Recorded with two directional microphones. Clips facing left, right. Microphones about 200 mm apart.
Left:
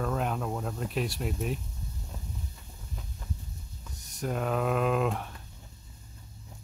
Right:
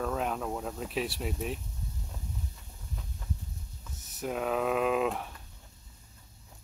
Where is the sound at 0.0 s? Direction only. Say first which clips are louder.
Left 1 dB; centre (ahead or behind).